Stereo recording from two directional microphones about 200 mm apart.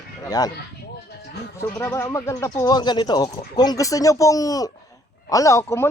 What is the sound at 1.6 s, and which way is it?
A woman's voice, 15° left (ahead or behind).